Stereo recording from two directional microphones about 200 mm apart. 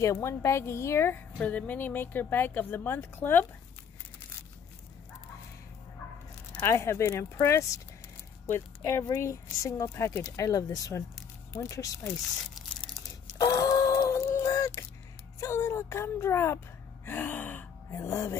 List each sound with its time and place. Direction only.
0.0 s a woman's voice: 15° left (ahead or behind)
6.5 s a woman's voice: 15° left (ahead or behind)
13.4 s a sound: 20° left (ahead or behind)
17.0 s gasp: 10° left (ahead or behind)